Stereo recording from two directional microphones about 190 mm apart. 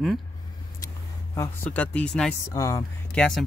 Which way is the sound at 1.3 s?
10° left (ahead or behind).